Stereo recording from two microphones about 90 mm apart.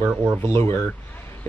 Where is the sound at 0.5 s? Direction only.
25° left (ahead or behind).